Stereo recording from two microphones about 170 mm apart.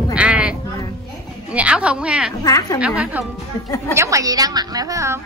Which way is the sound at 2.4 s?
20° left (ahead or behind).